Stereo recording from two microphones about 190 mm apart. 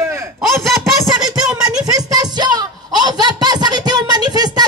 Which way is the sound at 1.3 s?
20° right (ahead or behind).